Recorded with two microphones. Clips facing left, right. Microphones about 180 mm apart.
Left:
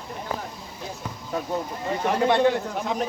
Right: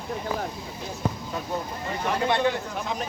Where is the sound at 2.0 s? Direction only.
55° left (ahead or behind).